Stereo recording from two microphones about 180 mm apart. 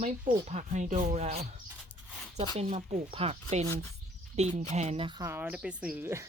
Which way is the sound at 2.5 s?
35° right (ahead or behind).